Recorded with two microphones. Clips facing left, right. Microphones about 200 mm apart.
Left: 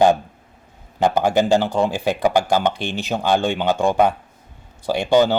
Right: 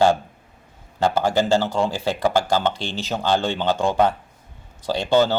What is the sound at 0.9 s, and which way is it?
Speech, 15° left (ahead or behind).